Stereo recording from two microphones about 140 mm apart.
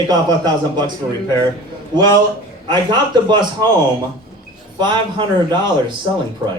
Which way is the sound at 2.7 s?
30° right (ahead or behind).